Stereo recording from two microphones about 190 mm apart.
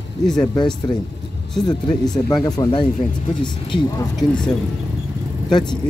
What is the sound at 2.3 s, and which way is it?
Speech, 20° left (ahead or behind).